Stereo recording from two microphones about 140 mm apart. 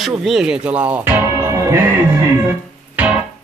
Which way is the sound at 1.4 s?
20° right (ahead or behind).